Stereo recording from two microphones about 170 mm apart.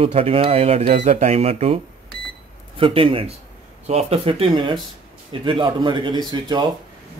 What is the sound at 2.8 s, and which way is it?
Speech, 30° right (ahead or behind).